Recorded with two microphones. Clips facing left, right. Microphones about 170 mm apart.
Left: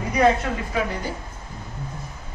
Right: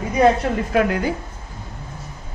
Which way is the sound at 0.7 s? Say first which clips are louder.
Right 9 dB; 70° right (ahead or behind).